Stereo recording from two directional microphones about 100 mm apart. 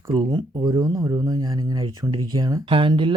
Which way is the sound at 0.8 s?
30° right (ahead or behind).